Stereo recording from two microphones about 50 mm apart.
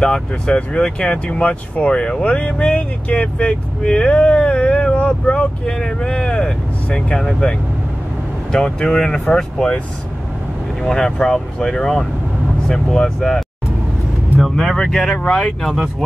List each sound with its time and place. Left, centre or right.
0.0 s speech: centre
5.7 s speech: centre
10.8 s speech: centre
14.4 s speech: centre